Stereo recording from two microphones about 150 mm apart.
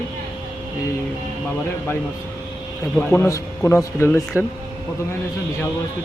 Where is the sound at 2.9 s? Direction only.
15° left (ahead or behind).